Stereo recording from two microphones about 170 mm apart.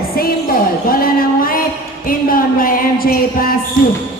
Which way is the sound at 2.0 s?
55° left (ahead or behind).